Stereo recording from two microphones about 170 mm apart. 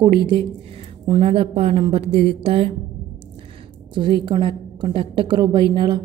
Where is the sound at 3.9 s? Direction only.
30° right (ahead or behind).